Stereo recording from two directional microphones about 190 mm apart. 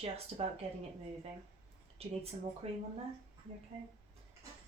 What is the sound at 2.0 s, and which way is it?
Speech, 30° right (ahead or behind).